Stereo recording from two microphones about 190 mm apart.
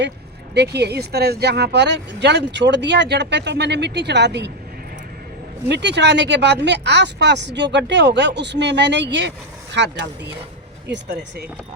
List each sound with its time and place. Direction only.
0.5 s speech: 60° right (ahead or behind)
5.6 s speech: 65° right (ahead or behind)